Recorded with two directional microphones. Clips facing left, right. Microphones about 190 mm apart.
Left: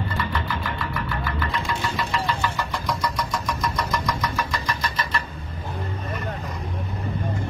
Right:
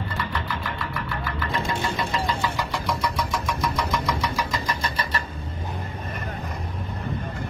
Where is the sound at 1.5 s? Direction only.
25° right (ahead or behind); by 4.3 s 5° right (ahead or behind).